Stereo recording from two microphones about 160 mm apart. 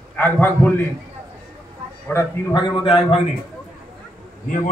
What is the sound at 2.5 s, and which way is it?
Speech, 30° left (ahead or behind).